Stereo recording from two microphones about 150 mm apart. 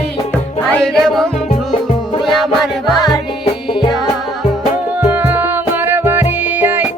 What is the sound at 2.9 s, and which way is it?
Music, 30° left (ahead or behind).